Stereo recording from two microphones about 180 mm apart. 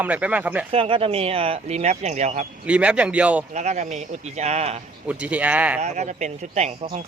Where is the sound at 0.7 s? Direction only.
30° right (ahead or behind).